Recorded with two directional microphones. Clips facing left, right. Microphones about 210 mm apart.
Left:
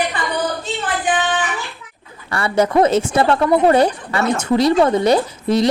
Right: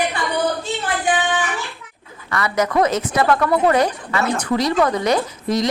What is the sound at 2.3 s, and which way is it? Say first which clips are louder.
A woman's voice: left 3 dB; 30° left (ahead or behind).